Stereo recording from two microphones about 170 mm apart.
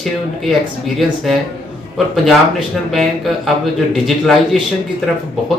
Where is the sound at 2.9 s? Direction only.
Centre (ahead or behind).